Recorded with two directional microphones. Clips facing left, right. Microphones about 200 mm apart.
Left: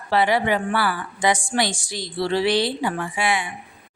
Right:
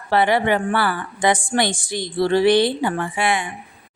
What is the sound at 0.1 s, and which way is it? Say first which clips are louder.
A woman's voice: right 2 dB; 55° right (ahead or behind).